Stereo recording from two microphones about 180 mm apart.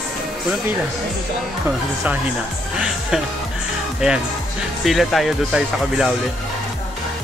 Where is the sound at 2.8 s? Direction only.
5° right (ahead or behind).